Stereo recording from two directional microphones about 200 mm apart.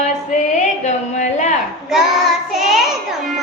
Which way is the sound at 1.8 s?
Centre (ahead or behind).